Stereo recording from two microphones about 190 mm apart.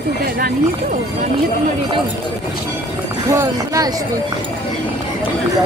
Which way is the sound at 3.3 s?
15° right (ahead or behind).